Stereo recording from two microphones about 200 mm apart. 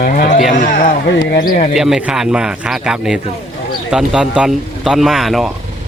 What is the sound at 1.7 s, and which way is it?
Speech, centre (ahead or behind).